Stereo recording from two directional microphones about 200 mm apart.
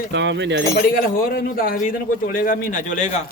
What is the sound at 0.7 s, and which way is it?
A man's voice, 45° left (ahead or behind).